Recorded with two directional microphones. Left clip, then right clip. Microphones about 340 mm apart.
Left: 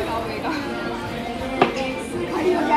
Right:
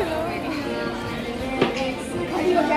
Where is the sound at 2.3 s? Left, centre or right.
Centre.